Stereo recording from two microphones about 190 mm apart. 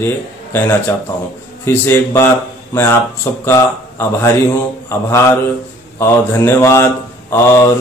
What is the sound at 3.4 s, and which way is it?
Speech, 15° left (ahead or behind).